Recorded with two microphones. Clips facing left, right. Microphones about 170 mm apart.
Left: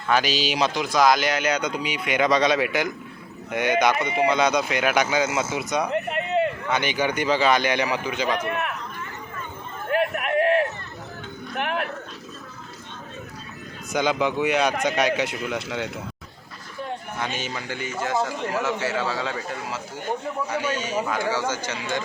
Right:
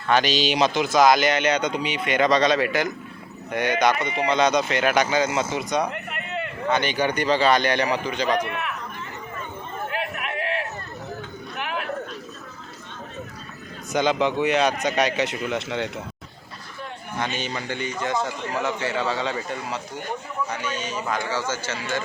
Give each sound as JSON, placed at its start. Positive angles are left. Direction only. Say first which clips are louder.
{"t": 0.1, "sound": "a man's voice", "louder": "right 2 dB", "side_deg": 5}
{"t": 5.9, "sound": "a sound", "louder": "left 8 dB", "side_deg": 30}
{"t": 6.7, "sound": "speech", "louder": "right 1 dB", "side_deg": 10}
{"t": 8.4, "sound": "speech", "louder": "left 3 dB", "side_deg": 50}
{"t": 9.9, "sound": "run", "louder": "left 11 dB", "side_deg": 50}
{"t": 11.5, "sound": "a sound", "louder": "left 4 dB", "side_deg": 55}
{"t": 13.9, "sound": "a man's voice", "louder": "right 1 dB", "side_deg": 10}
{"t": 17.2, "sound": "a man's voice", "louder": "right 5 dB", "side_deg": 5}